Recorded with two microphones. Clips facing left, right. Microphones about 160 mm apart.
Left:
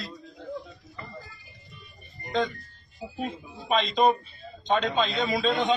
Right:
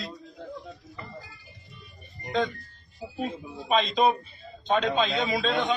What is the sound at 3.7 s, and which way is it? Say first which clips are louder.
A man's voice: even; centre (ahead or behind).